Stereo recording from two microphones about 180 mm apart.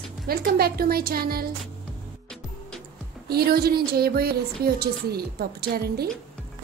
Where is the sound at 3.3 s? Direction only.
60° right (ahead or behind).